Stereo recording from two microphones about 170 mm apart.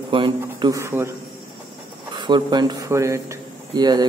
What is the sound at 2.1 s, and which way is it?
A man's voice, 25° right (ahead or behind).